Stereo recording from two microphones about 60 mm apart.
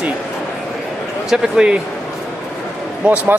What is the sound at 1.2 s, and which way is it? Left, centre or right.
Speech, centre.